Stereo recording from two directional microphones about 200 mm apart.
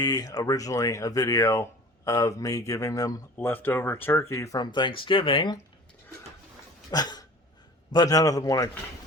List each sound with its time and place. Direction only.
0.0 s speech: 20° left (ahead or behind)
6.9 s speech: 20° left (ahead or behind)